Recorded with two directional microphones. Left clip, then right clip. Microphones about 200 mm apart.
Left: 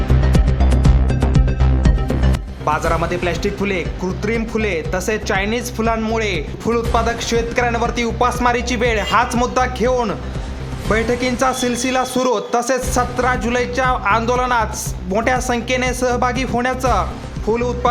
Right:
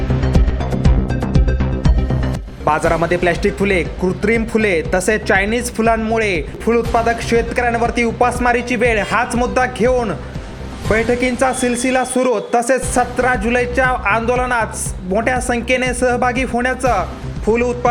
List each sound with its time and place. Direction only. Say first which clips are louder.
2.6 s a man's voice: right 3 dB; 15° right (ahead or behind)